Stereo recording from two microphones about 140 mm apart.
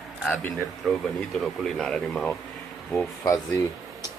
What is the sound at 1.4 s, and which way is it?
Speech, centre (ahead or behind).